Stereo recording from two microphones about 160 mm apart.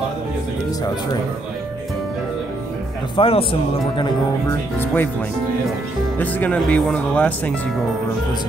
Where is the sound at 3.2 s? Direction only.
35° left (ahead or behind).